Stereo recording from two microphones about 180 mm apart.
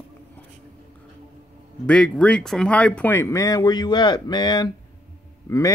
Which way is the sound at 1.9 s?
5° left (ahead or behind).